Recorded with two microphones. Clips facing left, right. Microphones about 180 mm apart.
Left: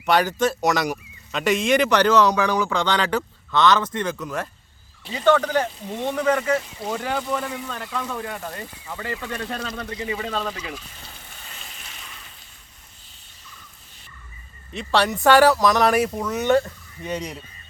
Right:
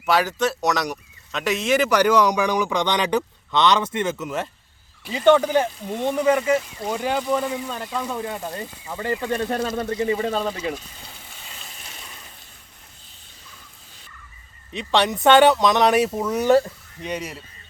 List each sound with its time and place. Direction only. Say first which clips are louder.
0.0 s speech: left 1 dB; 5° right (ahead or behind)
9.6 s speech: right 7 dB; 25° right (ahead or behind)
11.9 s a sound: right 1 dB; 30° right (ahead or behind)
14.9 s speech: right 1 dB; 20° right (ahead or behind)
17.0 s speech: even; 10° right (ahead or behind)